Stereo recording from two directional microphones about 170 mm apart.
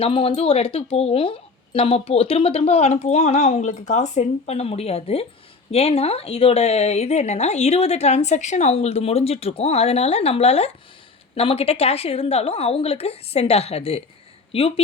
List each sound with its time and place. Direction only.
0.0 s speech: 35° left (ahead or behind)